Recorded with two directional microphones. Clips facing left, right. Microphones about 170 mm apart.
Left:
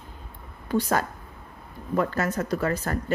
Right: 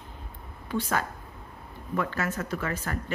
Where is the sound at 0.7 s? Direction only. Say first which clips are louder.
Left 5 dB; 40° left (ahead or behind).